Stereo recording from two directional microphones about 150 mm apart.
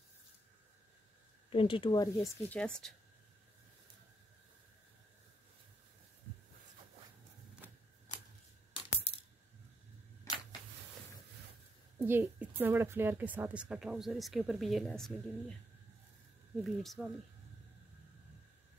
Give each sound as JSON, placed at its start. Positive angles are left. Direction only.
{"t": 1.5, "sound": "speech", "side_deg": 35}
{"t": 2.3, "sound": "a woman's voice", "side_deg": 5}
{"t": 10.3, "sound": "a sound", "side_deg": 25}
{"t": 12.0, "sound": "a woman's voice", "side_deg": -15}
{"t": 16.6, "sound": "a woman's voice", "side_deg": 0}